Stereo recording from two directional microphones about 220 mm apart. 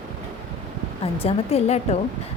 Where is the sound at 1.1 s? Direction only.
25° left (ahead or behind).